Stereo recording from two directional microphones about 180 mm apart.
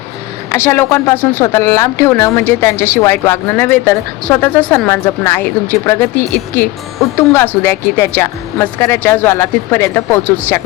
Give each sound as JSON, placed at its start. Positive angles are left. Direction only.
{"t": 0.5, "sound": "speech", "side_deg": 15}